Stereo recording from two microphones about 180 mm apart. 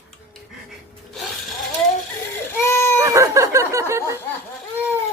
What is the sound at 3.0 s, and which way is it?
Chicken, 15° right (ahead or behind).